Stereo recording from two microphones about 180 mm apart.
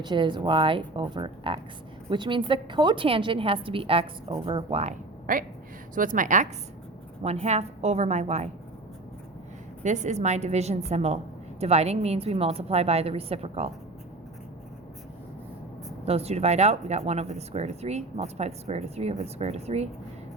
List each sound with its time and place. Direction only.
0.0 s a woman's voice: 25° right (ahead or behind)
5.2 s a woman's voice: 50° right (ahead or behind)
9.8 s speech: 40° right (ahead or behind)
16.0 s speech: 35° right (ahead or behind)